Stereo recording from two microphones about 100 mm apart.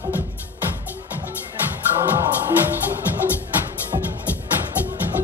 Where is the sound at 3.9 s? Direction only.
50° right (ahead or behind).